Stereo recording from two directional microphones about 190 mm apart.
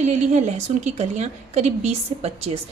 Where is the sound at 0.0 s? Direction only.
35° right (ahead or behind).